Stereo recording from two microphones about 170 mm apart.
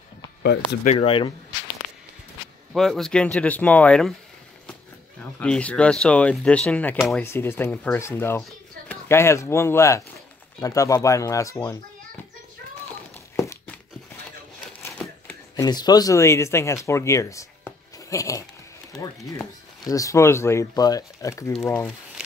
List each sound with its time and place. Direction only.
0.4 s speech: 85° left
0.9 s speech: 30° left (ahead or behind)
2.7 s speech: centre (ahead or behind)
5.2 s speech: 5° left (ahead or behind)
7.2 s speech: 15° left (ahead or behind)
8.4 s a sound: 5° left (ahead or behind)
9.1 s speech: 15° left (ahead or behind)
13.4 s a sound: 15° left (ahead or behind)
14.8 s a sound: 15° left (ahead or behind)
15.5 s speech: 25° left (ahead or behind)